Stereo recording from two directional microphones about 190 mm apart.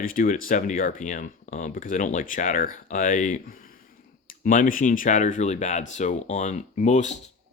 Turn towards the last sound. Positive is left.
turn(degrees=40)  # may be behind; listen again after turning